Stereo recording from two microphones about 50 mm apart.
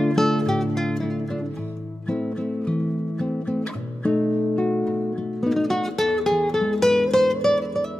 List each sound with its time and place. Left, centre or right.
0.0 s music: centre
5.4 s music: centre